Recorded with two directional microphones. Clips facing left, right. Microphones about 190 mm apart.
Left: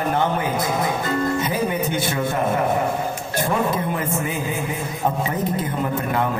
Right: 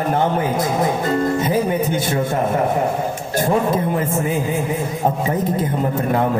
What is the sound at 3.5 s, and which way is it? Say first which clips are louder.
Speech: right 4 dB; 35° right (ahead or behind).